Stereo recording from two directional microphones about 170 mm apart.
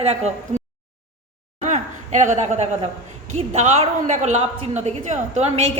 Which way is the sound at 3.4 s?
40° right (ahead or behind).